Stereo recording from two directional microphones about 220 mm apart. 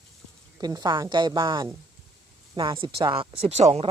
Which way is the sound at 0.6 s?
20° right (ahead or behind).